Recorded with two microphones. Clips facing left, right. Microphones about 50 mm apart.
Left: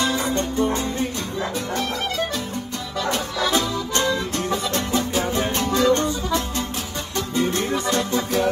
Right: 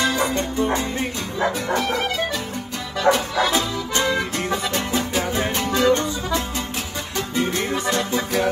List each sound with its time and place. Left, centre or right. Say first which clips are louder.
0.0 s music: right 1 dB; right
7.2 s music: left 1 dB; right